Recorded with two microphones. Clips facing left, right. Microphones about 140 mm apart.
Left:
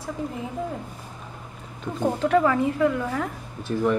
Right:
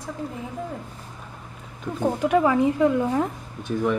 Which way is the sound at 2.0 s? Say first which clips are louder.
Even; 10° right (ahead or behind).